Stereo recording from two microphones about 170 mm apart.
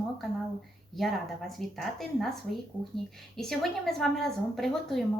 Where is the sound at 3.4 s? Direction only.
Centre (ahead or behind).